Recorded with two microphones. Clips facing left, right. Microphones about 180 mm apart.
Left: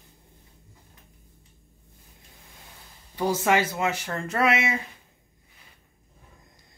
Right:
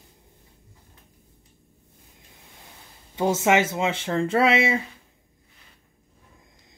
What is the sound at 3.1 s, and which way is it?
Speech, 20° right (ahead or behind).